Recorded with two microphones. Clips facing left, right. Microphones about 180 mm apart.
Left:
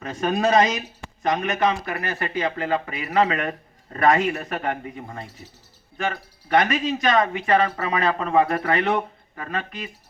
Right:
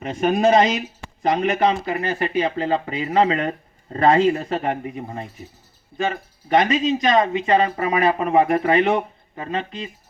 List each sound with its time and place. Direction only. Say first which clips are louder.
0.0 s speech: right 4 dB; 25° right (ahead or behind)
6.5 s speech: right 3 dB; 20° right (ahead or behind)